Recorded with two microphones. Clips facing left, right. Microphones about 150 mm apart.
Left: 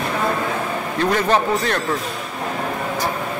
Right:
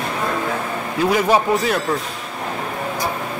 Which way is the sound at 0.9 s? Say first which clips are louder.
Right 2 dB; 10° right (ahead or behind).